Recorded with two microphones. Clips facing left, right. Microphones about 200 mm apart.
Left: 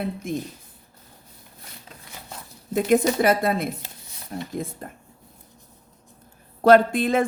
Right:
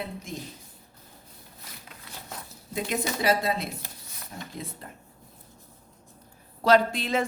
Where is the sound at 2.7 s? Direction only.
50° left (ahead or behind).